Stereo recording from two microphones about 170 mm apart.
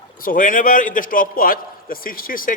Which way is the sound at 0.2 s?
55° left (ahead or behind).